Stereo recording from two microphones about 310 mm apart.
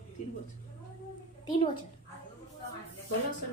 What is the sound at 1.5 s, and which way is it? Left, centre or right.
Speech, centre.